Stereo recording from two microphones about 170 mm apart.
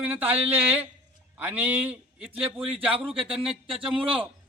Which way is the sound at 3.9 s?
30° right (ahead or behind).